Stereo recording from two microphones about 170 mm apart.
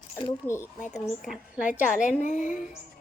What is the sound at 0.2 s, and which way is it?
Speech, 20° left (ahead or behind).